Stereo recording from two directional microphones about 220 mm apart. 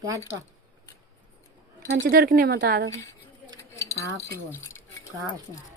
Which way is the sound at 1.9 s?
45° right (ahead or behind).